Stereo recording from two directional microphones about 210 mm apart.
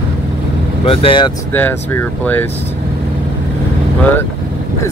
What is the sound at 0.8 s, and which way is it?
Speech, 25° left (ahead or behind).